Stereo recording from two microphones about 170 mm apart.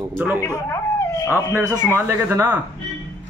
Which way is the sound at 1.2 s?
15° left (ahead or behind).